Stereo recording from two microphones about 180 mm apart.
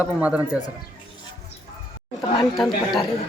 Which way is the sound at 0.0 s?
5° right (ahead or behind).